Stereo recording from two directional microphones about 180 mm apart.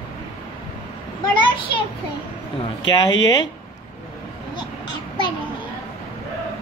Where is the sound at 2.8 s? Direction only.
25° left (ahead or behind).